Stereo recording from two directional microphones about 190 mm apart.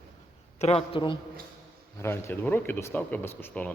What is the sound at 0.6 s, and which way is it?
Speech, 30° left (ahead or behind).